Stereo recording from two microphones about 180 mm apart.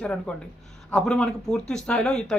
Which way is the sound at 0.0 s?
5° left (ahead or behind).